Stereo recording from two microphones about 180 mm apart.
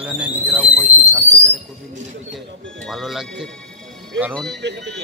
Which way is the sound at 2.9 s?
Centre (ahead or behind).